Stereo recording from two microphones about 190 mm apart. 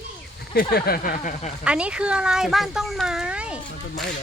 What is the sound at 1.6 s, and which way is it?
Speech, 5° right (ahead or behind).